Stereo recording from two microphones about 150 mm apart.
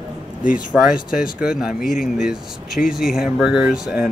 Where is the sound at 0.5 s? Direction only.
5° right (ahead or behind).